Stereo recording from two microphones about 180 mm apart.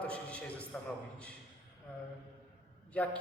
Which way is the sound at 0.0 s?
5° left (ahead or behind).